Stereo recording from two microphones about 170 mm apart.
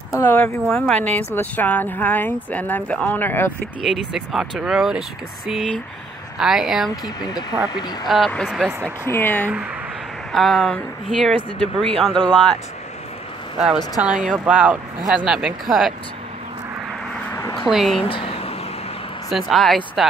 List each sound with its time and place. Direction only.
0.1 s speech: 10° left (ahead or behind)
0.7 s speech: centre (ahead or behind)
3.8 s speech: centre (ahead or behind)
7.2 s speech: 25° left (ahead or behind)
8.1 s speech: 5° left (ahead or behind)
9.0 s speech: 10° left (ahead or behind)
13.9 s speech: 5° right (ahead or behind)
17.6 s speech: centre (ahead or behind)
18.0 s a sound: 35° left (ahead or behind)
19.2 s speech: centre (ahead or behind)